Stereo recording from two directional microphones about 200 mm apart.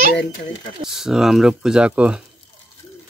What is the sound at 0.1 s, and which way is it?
Speech, 50° left (ahead or behind).